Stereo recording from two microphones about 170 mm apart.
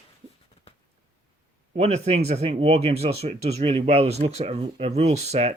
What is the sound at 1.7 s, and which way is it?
Speech, 40° right (ahead or behind).